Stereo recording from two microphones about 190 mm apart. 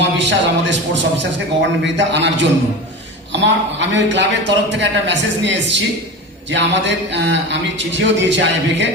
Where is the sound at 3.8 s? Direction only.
75° right (ahead or behind).